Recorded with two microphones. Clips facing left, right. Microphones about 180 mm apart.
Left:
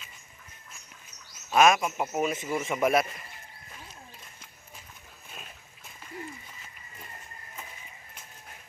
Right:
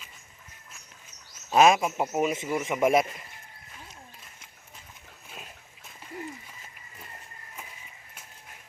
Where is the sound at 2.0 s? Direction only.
15° right (ahead or behind).